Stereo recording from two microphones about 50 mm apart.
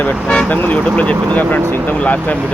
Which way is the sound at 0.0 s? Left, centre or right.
Left.